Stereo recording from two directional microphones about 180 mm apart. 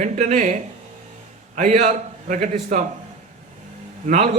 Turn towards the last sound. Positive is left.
turn(degrees=-40)  # may be behind; listen again after turning